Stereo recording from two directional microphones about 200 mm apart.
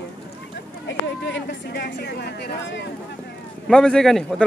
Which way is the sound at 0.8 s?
65° left (ahead or behind).